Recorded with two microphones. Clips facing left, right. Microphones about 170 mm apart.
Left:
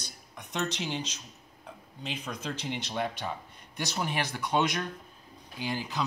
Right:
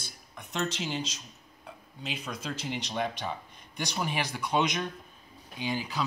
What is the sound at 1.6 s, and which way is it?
Speech, 10° right (ahead or behind).